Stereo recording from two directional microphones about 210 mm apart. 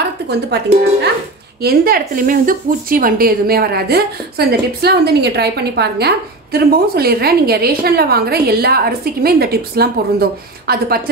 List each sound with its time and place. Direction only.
0.3 s speech: 50° right (ahead or behind)